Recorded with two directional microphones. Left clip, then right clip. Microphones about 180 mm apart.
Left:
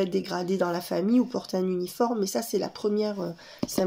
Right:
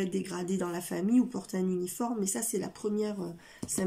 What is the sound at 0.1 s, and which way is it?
Speech, 25° right (ahead or behind).